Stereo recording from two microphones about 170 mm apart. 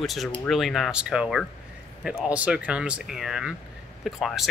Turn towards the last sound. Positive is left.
turn(degrees=0)  # may be behind; listen again after turning